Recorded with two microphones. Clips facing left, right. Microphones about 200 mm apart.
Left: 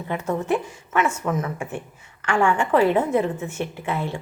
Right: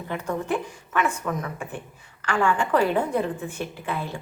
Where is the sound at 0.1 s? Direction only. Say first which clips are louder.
Left 4 dB; 20° left (ahead or behind).